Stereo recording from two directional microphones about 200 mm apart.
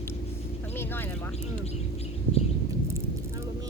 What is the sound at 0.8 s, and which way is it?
Speech, 10° left (ahead or behind).